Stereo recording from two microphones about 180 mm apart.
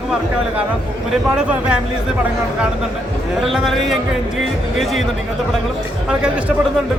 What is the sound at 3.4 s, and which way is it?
Speech, centre (ahead or behind).